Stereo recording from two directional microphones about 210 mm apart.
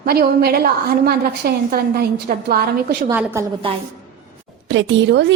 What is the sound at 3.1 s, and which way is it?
Speech, 10° right (ahead or behind).